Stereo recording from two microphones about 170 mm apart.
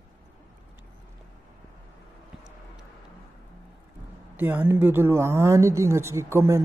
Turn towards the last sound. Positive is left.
turn(degrees=-15)  # may be behind; listen again after turning